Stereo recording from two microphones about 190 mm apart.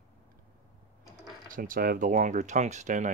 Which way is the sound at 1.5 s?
45° right (ahead or behind).